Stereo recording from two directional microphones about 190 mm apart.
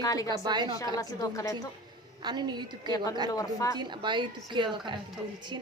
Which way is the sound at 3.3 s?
20° left (ahead or behind).